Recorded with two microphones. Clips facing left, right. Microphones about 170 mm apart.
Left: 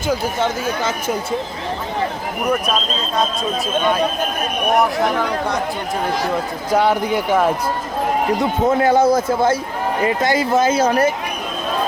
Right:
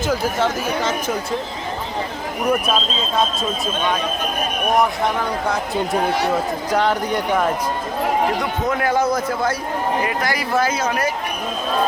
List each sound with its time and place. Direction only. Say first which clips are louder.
0.1 s speech: left 2 dB; centre (ahead or behind)
2.5 s speech: even; centre (ahead or behind)
6.7 s speech: left 4 dB; 10° left (ahead or behind)
8.4 s a man's voice: left 5 dB; 25° left (ahead or behind)